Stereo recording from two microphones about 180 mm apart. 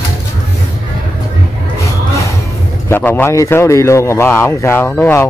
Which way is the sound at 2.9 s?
10° left (ahead or behind).